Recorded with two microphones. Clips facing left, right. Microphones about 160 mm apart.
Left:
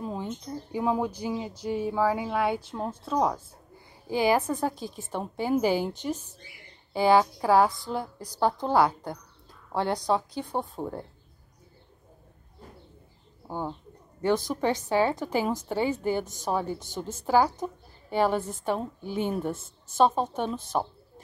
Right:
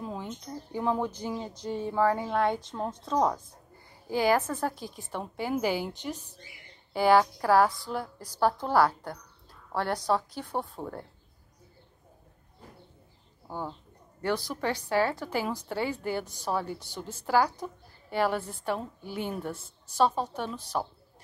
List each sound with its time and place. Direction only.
0.0 s speech: 20° left (ahead or behind)
4.7 s a woman's voice: 15° right (ahead or behind)
5.1 s speech: 20° left (ahead or behind)
6.9 s speech: 15° left (ahead or behind)
13.5 s a woman's voice: 20° left (ahead or behind)